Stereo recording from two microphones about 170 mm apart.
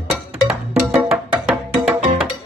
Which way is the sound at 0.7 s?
5° right (ahead or behind).